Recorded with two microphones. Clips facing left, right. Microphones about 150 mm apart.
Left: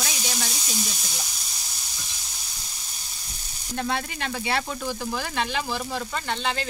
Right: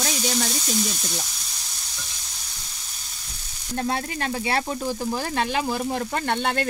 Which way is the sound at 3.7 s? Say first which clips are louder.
Right 2 dB; 40° right (ahead or behind).